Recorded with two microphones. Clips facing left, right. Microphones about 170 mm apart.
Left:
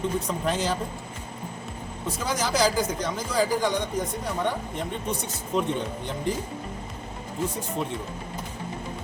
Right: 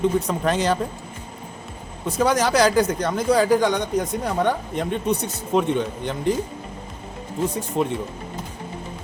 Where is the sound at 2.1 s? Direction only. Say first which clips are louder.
Right 8 dB; 65° right (ahead or behind).